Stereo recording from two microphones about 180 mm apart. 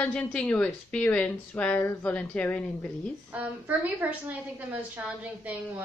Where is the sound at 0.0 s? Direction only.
5° left (ahead or behind).